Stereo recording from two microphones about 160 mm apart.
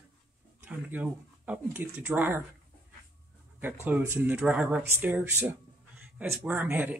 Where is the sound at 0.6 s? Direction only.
10° right (ahead or behind).